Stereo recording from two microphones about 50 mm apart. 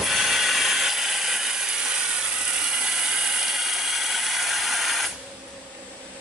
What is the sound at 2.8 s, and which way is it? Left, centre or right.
Ratchet, centre.